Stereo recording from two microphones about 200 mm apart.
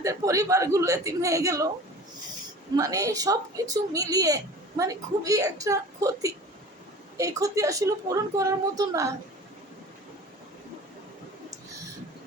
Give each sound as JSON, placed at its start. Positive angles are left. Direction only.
{"t": 0.0, "sound": "a woman's voice", "side_deg": -15}
{"t": 2.7, "sound": "a woman's voice", "side_deg": -15}